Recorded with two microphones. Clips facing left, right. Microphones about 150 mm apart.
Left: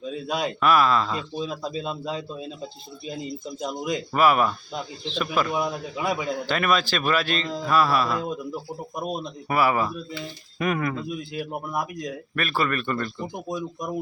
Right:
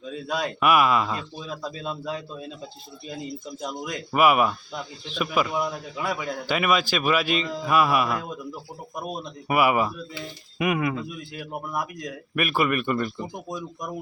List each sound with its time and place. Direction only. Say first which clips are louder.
0.3 s a man's voice: left 1 dB; 15° left (ahead or behind)
0.6 s speech: even; 15° right (ahead or behind)
1.4 s a man's voice: left 4 dB; 20° left (ahead or behind)
4.1 s speech: right 1 dB; 10° right (ahead or behind)
5.5 s a man's voice: left 1 dB; 15° left (ahead or behind)
6.4 s speech: right 2 dB; 10° right (ahead or behind)
9.5 s speech: right 1 dB; 15° right (ahead or behind)
11.1 s a man's voice: left 4 dB; 20° left (ahead or behind)
12.3 s speech: right 3 dB; 15° right (ahead or behind)
13.5 s a man's voice: left 3 dB; 10° left (ahead or behind)